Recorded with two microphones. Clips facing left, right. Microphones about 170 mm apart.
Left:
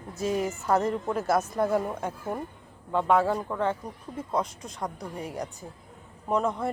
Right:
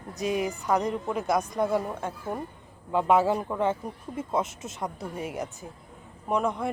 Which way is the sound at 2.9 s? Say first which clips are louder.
Right 1 dB; 5° right (ahead or behind).